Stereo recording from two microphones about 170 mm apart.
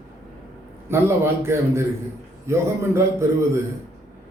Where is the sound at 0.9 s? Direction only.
15° right (ahead or behind).